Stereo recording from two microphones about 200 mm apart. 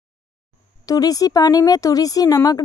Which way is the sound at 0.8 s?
20° left (ahead or behind).